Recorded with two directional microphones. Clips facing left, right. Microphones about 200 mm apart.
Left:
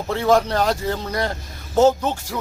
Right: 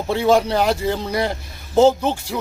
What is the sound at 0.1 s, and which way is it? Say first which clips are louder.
Speech: right 1 dB; 15° right (ahead or behind).